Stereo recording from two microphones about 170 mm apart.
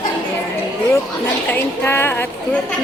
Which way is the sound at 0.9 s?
15° left (ahead or behind).